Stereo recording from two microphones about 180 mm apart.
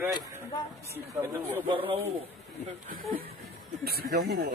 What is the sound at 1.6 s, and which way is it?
Speech, 30° right (ahead or behind).